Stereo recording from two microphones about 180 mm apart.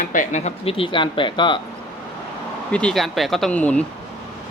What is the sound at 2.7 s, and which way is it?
Speech, 5° left (ahead or behind).